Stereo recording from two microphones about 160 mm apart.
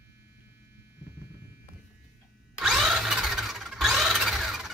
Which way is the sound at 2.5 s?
Centre (ahead or behind).